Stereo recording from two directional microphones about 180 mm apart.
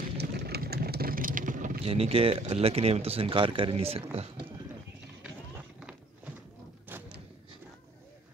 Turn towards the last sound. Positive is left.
turn(degrees=-10)  # may be behind; listen again after turning